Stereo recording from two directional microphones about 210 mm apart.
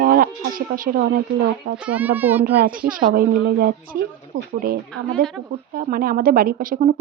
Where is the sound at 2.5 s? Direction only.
45° right (ahead or behind).